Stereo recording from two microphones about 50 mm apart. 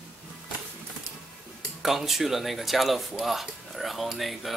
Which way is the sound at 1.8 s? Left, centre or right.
Centre.